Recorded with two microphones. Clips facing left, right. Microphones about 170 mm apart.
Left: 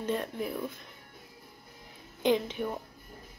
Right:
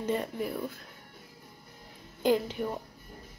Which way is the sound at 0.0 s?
10° right (ahead or behind).